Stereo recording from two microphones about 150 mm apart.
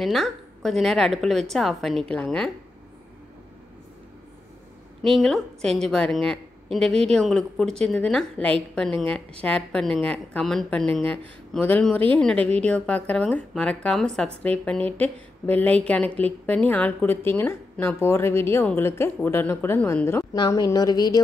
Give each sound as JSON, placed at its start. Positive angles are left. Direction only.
{"t": 0.0, "sound": "a woman's voice", "side_deg": 0}
{"t": 5.0, "sound": "a woman's voice", "side_deg": 0}